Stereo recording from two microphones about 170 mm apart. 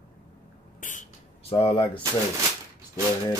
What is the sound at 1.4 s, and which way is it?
Speech, 30° left (ahead or behind).